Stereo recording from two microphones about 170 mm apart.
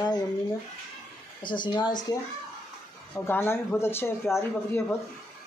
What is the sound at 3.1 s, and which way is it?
Speech, 15° left (ahead or behind).